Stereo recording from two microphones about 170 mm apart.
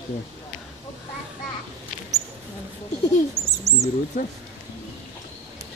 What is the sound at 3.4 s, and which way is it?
Bird, 40° right (ahead or behind).